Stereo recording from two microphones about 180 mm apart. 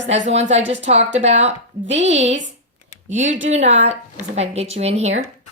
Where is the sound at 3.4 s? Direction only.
40° right (ahead or behind).